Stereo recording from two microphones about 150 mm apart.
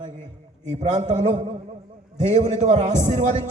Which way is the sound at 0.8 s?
50° right (ahead or behind).